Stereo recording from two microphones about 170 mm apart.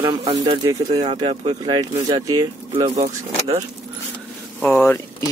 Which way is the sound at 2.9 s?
40° right (ahead or behind).